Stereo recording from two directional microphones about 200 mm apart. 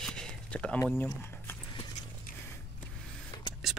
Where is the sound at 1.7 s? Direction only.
35° left (ahead or behind).